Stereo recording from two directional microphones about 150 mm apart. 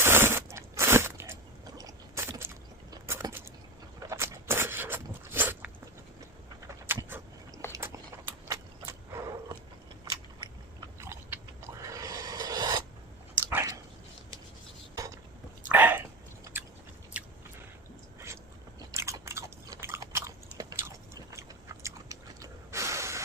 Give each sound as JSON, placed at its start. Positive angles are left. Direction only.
{"t": 0.0, "sound": "biting", "side_deg": -15}
{"t": 2.9, "sound": "a sound", "side_deg": -20}
{"t": 6.8, "sound": "dog", "side_deg": -15}
{"t": 7.7, "sound": "a sound", "side_deg": -20}
{"t": 11.0, "sound": "filing", "side_deg": -20}
{"t": 13.3, "sound": "dog", "side_deg": -15}
{"t": 14.9, "sound": "dishes", "side_deg": -20}
{"t": 15.7, "sound": "a sound", "side_deg": -10}
{"t": 16.4, "sound": "chewing", "side_deg": -15}
{"t": 17.2, "sound": "a sound", "side_deg": -10}
{"t": 18.8, "sound": "biting", "side_deg": -20}
{"t": 21.8, "sound": "chewing", "side_deg": -20}